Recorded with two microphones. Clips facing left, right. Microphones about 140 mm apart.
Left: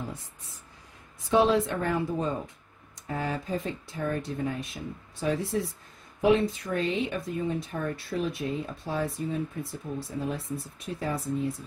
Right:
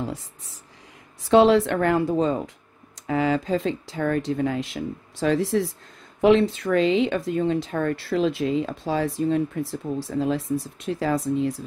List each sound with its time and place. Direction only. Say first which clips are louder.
1.3 s speech: right 7 dB; 80° right